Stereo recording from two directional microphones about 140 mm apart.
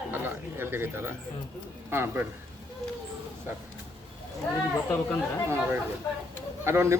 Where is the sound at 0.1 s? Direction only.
15° right (ahead or behind).